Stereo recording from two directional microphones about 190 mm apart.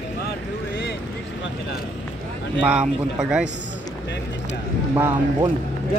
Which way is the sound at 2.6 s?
5° right (ahead or behind).